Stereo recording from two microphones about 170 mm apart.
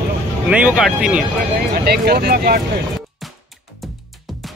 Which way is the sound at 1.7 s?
70° right (ahead or behind).